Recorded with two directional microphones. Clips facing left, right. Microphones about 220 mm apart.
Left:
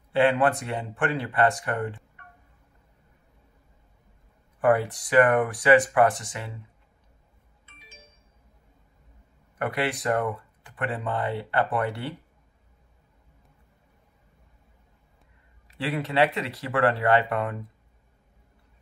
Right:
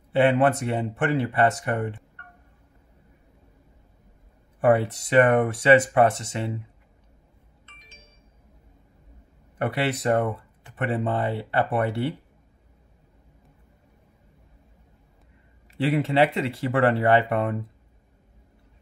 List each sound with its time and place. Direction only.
0.1 s speech: 20° right (ahead or behind)
4.6 s speech: 25° right (ahead or behind)
7.6 s music: 10° left (ahead or behind)
9.6 s speech: 25° right (ahead or behind)
15.8 s speech: 25° right (ahead or behind)